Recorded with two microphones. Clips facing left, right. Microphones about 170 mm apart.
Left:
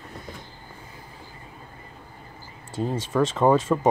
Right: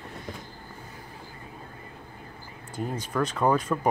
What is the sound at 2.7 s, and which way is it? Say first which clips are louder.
Speech: left 5 dB; 25° left (ahead or behind).